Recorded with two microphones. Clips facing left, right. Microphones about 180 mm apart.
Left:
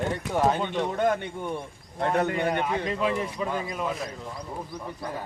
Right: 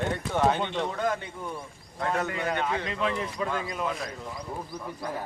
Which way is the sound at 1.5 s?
30° left (ahead or behind).